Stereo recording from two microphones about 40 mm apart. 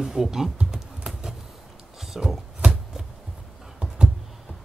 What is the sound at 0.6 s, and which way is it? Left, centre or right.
Typing, right.